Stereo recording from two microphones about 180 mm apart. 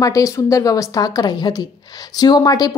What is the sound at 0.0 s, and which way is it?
A woman's voice, 20° left (ahead or behind).